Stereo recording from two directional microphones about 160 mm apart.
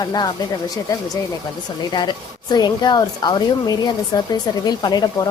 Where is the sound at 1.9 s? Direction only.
30° left (ahead or behind).